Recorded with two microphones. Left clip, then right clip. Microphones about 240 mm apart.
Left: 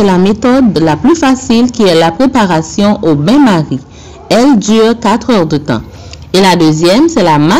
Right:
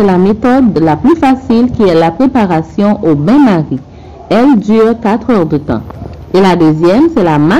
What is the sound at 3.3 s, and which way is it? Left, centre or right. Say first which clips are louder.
Speech: left 1 dB; left.